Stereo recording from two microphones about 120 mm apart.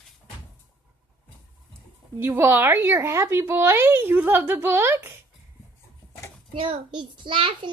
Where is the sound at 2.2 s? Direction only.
20° right (ahead or behind).